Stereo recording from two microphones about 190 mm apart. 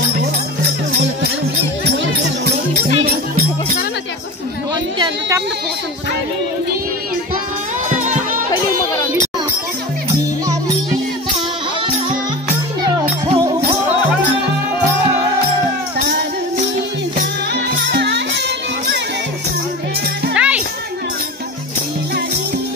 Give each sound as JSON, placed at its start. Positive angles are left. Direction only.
{"t": 4.9, "sound": "a sound", "side_deg": -25}
{"t": 8.0, "sound": "music", "side_deg": -40}
{"t": 13.3, "sound": "music", "side_deg": -30}
{"t": 17.9, "sound": "music", "side_deg": -60}
{"t": 20.3, "sound": "music", "side_deg": -5}